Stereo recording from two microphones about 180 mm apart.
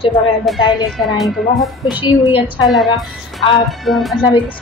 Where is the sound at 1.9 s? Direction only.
25° left (ahead or behind).